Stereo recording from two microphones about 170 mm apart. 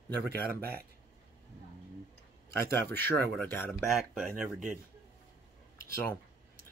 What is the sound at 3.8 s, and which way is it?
Speech, centre (ahead or behind).